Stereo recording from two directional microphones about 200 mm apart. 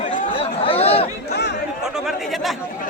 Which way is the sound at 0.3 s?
30° left (ahead or behind).